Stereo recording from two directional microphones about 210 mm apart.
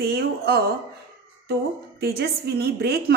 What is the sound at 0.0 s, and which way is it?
Speech, 50° right (ahead or behind).